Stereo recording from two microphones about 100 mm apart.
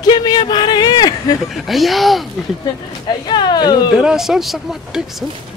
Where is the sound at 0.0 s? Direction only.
45° left (ahead or behind).